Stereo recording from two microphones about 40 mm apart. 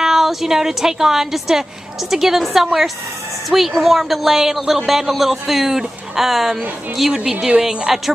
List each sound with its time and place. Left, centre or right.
0.0 s a woman's voice: centre
7.2 s speech: right